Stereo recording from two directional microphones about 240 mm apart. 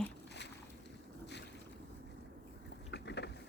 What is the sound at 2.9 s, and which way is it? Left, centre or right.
Vehicle, left.